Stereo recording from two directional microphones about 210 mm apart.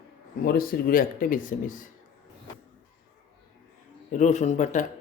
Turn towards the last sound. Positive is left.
turn(degrees=35)  # may be behind; listen again after turning